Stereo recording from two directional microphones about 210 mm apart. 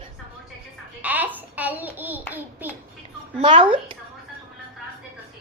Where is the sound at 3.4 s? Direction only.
25° right (ahead or behind).